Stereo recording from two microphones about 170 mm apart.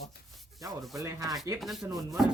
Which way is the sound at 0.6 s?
20° right (ahead or behind).